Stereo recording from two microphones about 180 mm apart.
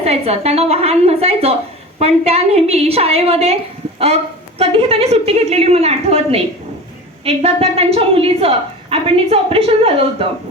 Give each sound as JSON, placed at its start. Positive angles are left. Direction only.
{"t": 0.0, "sound": "a woman's voice", "side_deg": -35}